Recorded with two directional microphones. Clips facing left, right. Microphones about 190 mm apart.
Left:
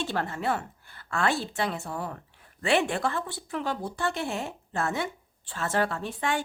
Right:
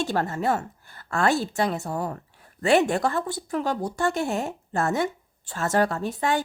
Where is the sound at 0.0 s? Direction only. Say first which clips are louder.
Right 5 dB; 40° right (ahead or behind).